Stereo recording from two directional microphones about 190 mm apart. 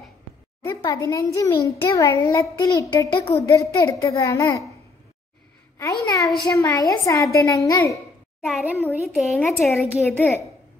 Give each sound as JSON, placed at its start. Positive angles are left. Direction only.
{"t": 0.8, "sound": "a child's voice", "side_deg": 15}
{"t": 5.8, "sound": "a child's voice", "side_deg": 15}
{"t": 8.5, "sound": "speech", "side_deg": 0}